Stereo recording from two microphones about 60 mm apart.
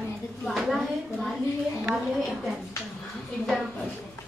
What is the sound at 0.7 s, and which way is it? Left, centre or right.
A woman's voice, centre.